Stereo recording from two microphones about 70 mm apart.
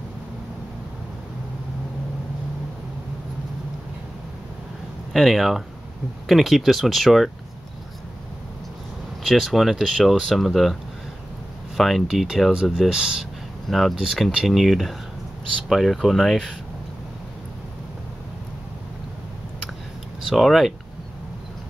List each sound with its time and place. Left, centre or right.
5.1 s speech: centre
9.2 s speech: centre
12.9 s speech: centre
13.7 s speech: centre
20.2 s speech: centre